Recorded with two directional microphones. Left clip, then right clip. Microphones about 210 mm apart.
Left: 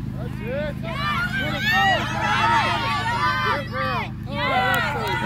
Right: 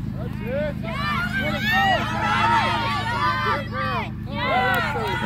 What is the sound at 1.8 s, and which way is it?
Hubbub, 45° left (ahead or behind).